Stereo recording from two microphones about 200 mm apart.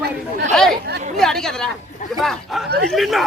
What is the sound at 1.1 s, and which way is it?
Speech, centre (ahead or behind).